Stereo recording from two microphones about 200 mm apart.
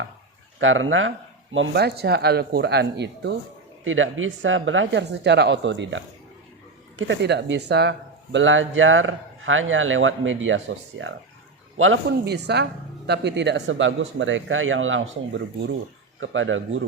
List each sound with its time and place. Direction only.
0.6 s speech: 80° right
1.5 s speech: 60° right (ahead or behind)
3.8 s speech: 80° right
7.1 s speech: 60° right (ahead or behind)
12.0 s speech: 55° right (ahead or behind); by 16.8 s 75° right (ahead or behind)